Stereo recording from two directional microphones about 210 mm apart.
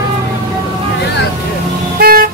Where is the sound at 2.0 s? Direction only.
45° right (ahead or behind).